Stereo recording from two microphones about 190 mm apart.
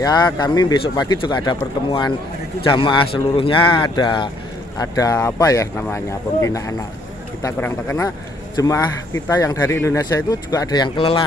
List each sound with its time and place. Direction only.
0.0 s speech: 20° left (ahead or behind)